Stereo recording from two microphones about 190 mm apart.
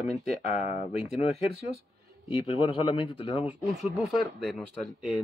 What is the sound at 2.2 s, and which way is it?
Speech, 30° left (ahead or behind).